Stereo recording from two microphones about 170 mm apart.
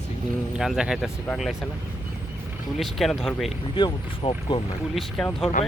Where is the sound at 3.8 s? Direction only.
30° left (ahead or behind).